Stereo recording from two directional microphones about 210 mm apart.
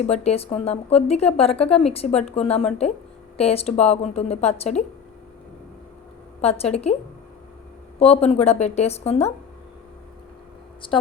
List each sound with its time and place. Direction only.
0.0 s speech: 30° left (ahead or behind)
6.4 s speech: 30° left (ahead or behind)
7.9 s a woman's voice: 30° left (ahead or behind)
10.8 s speech: 25° left (ahead or behind)